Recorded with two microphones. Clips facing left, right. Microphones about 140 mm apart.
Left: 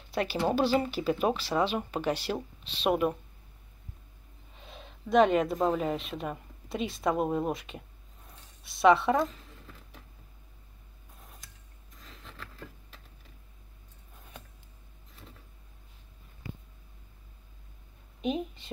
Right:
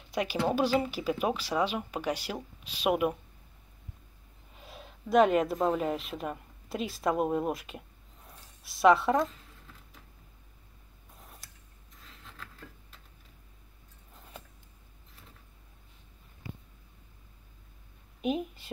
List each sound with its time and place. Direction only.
0.1 s speech: 10° right (ahead or behind)
4.6 s a woman's voice: 5° right (ahead or behind)
18.2 s a woman's voice: 5° right (ahead or behind)